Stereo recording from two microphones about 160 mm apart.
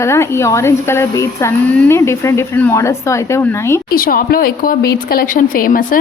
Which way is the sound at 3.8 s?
65° left (ahead or behind).